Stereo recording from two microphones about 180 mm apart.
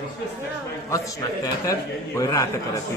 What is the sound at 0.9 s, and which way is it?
A man's voice, 15° left (ahead or behind).